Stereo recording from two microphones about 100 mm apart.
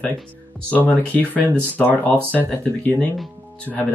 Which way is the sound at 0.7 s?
15° left (ahead or behind).